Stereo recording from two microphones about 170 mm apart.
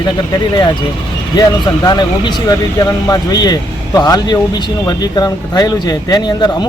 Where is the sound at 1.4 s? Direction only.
25° left (ahead or behind).